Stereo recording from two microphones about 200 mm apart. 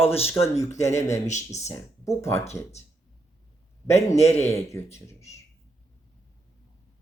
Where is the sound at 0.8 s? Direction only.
35° left (ahead or behind).